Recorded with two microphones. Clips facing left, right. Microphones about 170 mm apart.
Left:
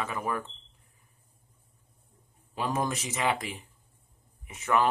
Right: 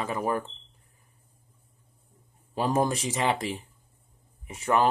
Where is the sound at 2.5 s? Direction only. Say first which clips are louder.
Right 5 dB; 35° right (ahead or behind).